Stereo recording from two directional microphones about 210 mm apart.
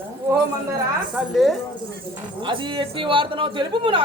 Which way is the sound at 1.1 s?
Centre (ahead or behind).